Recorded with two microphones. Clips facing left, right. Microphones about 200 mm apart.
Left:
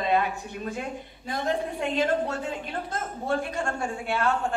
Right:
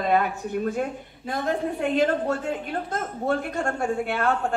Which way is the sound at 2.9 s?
55° right (ahead or behind).